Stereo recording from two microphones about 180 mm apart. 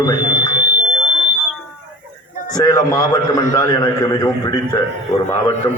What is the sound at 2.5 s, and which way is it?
A man's voice, 20° left (ahead or behind).